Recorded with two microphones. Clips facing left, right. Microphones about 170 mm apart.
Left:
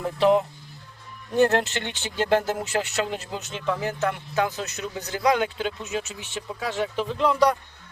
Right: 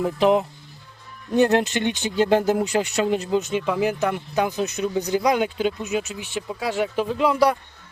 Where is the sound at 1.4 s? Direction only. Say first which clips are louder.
Right 2 dB; 15° right (ahead or behind).